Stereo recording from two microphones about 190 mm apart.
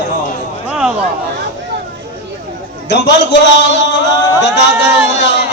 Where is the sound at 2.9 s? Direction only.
65° left (ahead or behind).